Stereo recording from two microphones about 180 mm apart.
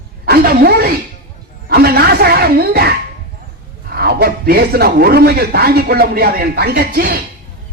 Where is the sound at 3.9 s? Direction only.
60° right (ahead or behind).